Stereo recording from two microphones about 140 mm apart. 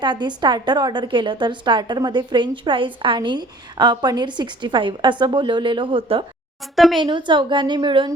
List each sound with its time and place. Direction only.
0.0 s a woman's voice: 35° right (ahead or behind)
6.7 s speech: centre (ahead or behind)
7.0 s a woman's voice: 35° right (ahead or behind)